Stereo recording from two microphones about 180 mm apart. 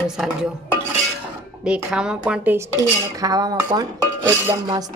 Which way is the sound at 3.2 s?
20° right (ahead or behind).